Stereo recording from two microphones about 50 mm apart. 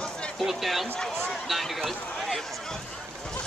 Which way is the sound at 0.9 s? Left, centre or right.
Centre.